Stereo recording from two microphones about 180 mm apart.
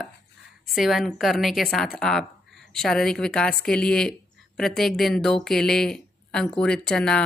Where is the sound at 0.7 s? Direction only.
Centre (ahead or behind).